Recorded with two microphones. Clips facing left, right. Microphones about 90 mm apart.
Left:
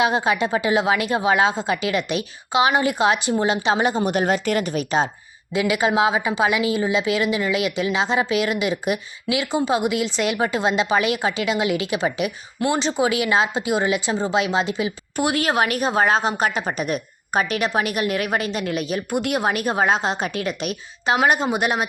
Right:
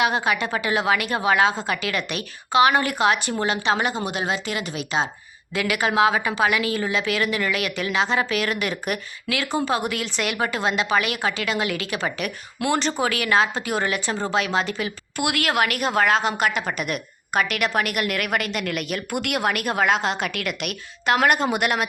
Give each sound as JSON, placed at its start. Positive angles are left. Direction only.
{"t": 0.0, "sound": "a woman's voice", "side_deg": 25}
{"t": 4.1, "sound": "speech", "side_deg": 45}
{"t": 5.5, "sound": "a woman's voice", "side_deg": 25}
{"t": 12.6, "sound": "speech", "side_deg": 5}
{"t": 13.0, "sound": "a woman's voice", "side_deg": 20}
{"t": 21.1, "sound": "a woman's voice", "side_deg": 15}